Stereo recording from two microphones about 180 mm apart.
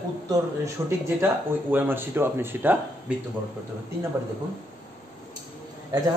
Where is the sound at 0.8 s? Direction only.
15° right (ahead or behind).